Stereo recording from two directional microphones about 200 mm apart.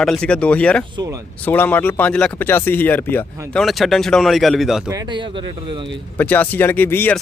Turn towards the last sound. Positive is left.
turn(degrees=10)  # may be behind; listen again after turning